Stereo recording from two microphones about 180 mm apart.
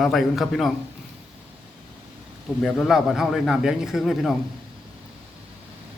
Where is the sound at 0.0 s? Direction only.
Centre (ahead or behind).